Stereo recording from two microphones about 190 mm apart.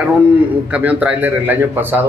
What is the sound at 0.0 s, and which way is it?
A man's voice, 5° right (ahead or behind).